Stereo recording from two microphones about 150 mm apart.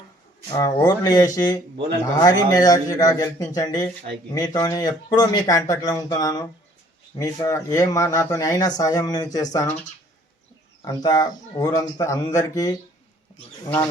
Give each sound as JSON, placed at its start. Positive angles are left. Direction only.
{"t": 0.5, "sound": "speech", "side_deg": 25}
{"t": 10.8, "sound": "speech", "side_deg": 25}